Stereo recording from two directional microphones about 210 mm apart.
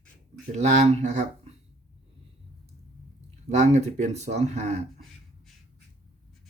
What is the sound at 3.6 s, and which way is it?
Speech, 35° right (ahead or behind).